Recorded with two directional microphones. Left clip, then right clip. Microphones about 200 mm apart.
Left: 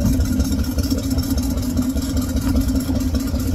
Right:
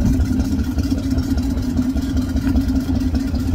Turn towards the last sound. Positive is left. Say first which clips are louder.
# right 1 dB
turn(degrees=30)  # may be behind; listen again after turning